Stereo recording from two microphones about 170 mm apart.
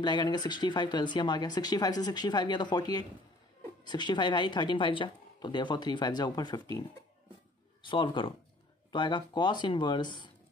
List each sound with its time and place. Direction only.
0.0 s speech: 25° left (ahead or behind)
7.8 s speech: 30° left (ahead or behind)